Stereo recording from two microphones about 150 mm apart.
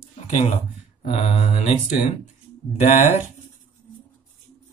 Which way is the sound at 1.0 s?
45° left (ahead or behind).